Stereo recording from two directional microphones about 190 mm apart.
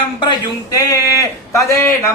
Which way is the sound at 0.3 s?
20° left (ahead or behind).